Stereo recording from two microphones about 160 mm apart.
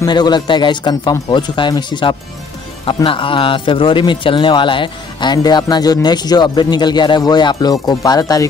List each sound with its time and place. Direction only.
0.0 s a man's voice: 25° left (ahead or behind)